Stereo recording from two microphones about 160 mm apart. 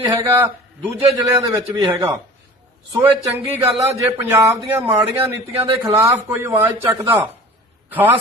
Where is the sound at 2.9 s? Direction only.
15° right (ahead or behind).